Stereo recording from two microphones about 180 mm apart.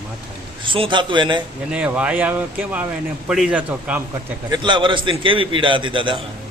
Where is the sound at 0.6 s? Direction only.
30° right (ahead or behind).